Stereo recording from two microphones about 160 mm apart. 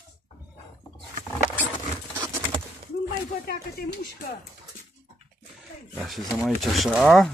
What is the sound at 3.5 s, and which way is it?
Speech, 70° left (ahead or behind).